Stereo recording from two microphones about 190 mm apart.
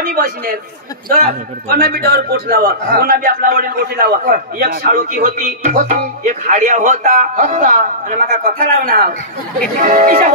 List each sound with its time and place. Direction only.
0.0 s a man's voice: 50° right (ahead or behind)